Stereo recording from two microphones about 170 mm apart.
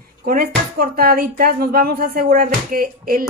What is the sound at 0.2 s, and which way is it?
Speech, 60° right (ahead or behind).